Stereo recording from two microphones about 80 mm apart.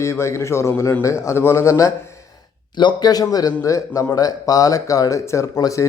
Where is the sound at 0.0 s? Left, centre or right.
Left.